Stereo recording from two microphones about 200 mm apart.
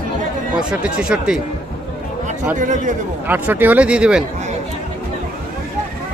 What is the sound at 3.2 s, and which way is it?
Speech, 10° right (ahead or behind).